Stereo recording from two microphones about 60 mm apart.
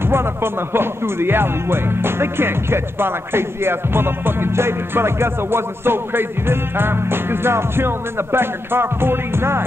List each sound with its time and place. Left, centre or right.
0.0 s speech: right